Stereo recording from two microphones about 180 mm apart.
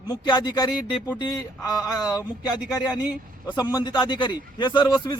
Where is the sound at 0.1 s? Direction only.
25° left (ahead or behind).